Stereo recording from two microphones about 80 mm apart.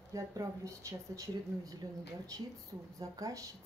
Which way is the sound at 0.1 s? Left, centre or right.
Right.